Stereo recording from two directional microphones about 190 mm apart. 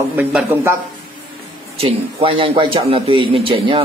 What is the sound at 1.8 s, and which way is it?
A man's voice, 30° right (ahead or behind).